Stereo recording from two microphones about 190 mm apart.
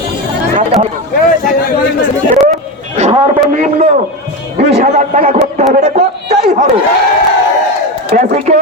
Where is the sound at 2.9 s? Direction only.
35° right (ahead or behind).